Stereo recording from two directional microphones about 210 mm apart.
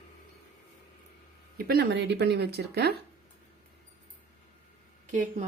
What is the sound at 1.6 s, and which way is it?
Speech, 45° right (ahead or behind).